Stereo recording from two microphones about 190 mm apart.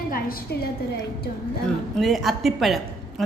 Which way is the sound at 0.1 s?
50° left (ahead or behind).